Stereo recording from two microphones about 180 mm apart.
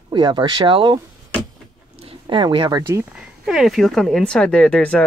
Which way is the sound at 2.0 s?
30° right (ahead or behind).